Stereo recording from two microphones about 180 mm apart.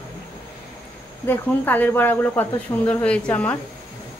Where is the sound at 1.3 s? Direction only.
10° left (ahead or behind).